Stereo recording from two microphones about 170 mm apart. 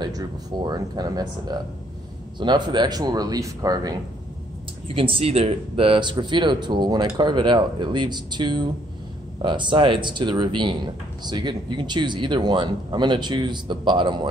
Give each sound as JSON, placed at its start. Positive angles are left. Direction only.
{"t": 0.0, "sound": "speech", "side_deg": -20}
{"t": 4.8, "sound": "speech", "side_deg": -30}